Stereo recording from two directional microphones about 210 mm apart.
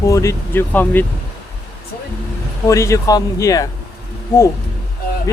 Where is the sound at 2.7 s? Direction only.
15° left (ahead or behind).